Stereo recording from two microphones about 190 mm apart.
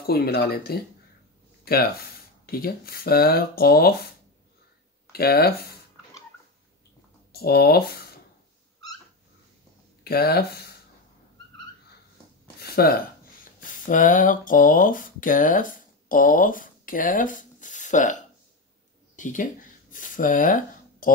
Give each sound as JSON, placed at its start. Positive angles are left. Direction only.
{"t": 0.0, "sound": "speech", "side_deg": 55}
{"t": 5.1, "sound": "speech", "side_deg": 55}
{"t": 7.4, "sound": "speech", "side_deg": 55}
{"t": 10.0, "sound": "speech", "side_deg": 55}
{"t": 12.5, "sound": "a sound", "side_deg": 55}
{"t": 13.6, "sound": "speech", "side_deg": 45}
{"t": 19.1, "sound": "a sound", "side_deg": 40}